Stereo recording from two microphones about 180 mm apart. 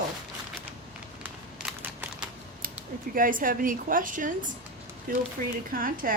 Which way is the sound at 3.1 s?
50° right (ahead or behind).